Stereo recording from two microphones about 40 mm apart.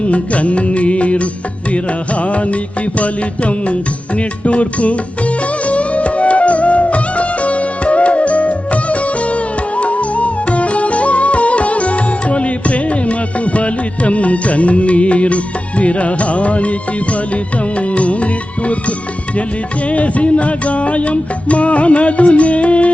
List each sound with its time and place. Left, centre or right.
0.0 s music: left
17.7 s music: left
19.9 s music: left